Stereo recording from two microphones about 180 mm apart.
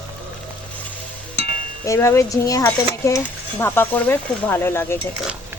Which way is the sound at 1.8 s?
15° left (ahead or behind).